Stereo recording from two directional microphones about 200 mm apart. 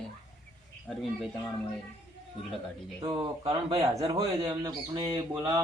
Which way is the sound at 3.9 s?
15° right (ahead or behind).